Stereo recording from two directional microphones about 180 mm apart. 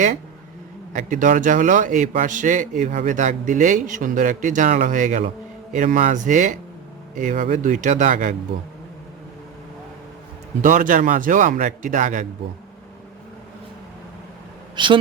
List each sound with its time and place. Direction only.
0.9 s a man's voice: 45° right (ahead or behind)
10.6 s a man's voice: 45° right (ahead or behind)
14.8 s speech: 25° right (ahead or behind)